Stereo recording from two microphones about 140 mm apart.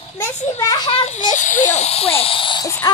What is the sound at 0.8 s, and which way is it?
Speech, 45° left (ahead or behind).